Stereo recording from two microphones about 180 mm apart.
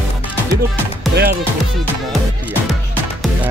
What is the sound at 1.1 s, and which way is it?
Speech, 65° right (ahead or behind).